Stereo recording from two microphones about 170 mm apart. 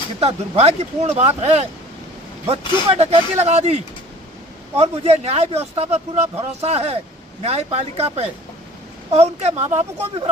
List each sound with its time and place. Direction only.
0.2 s speech: 35° right (ahead or behind)
4.8 s speech: 35° right (ahead or behind)